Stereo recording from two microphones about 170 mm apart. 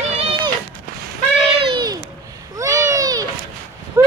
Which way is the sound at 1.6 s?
25° right (ahead or behind).